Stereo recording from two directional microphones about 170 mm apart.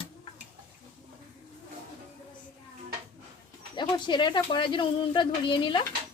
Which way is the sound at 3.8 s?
25° left (ahead or behind).